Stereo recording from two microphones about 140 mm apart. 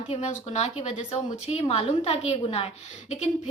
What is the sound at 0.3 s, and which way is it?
A woman's voice, 50° left (ahead or behind).